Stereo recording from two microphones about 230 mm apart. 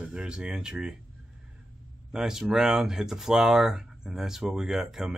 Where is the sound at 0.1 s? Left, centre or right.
Centre.